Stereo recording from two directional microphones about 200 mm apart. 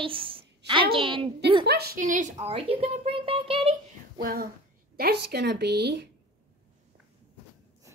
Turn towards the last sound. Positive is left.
turn(degrees=-60)  # may be behind; listen again after turning